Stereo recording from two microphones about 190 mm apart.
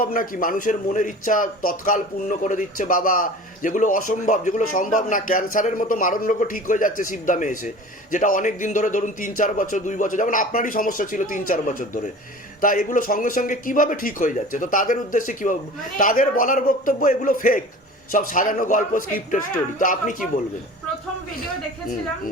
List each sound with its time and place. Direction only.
0.0 s speech: 45° left (ahead or behind)